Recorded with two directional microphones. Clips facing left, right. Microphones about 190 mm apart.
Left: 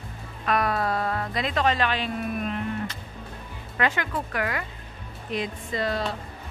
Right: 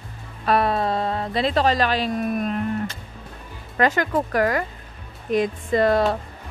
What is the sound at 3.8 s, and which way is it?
Speech, 40° right (ahead or behind).